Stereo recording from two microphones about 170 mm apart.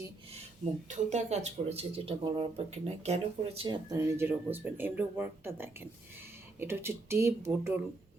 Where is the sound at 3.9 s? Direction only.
15° right (ahead or behind).